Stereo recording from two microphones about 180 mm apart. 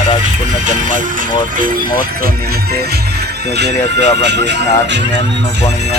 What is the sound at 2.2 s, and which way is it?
Speech, 60° right (ahead or behind).